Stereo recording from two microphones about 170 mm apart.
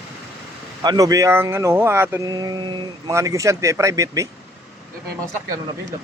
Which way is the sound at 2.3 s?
25° right (ahead or behind).